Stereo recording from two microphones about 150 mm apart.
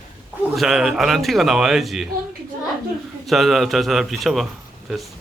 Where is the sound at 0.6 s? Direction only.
5° right (ahead or behind).